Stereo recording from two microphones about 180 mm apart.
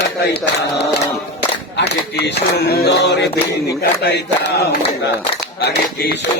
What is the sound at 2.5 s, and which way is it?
Mantra, 65° left (ahead or behind).